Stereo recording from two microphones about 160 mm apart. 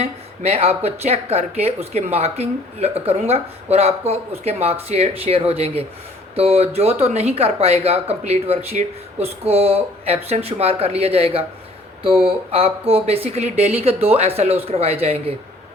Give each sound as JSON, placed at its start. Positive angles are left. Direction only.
{"t": 0.0, "sound": "speech", "side_deg": -40}